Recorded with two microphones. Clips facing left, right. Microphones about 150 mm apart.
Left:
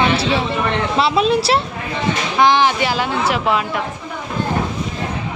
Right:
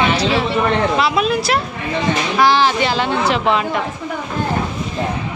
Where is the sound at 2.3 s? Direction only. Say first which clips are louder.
Left 1 dB; 20° left (ahead or behind).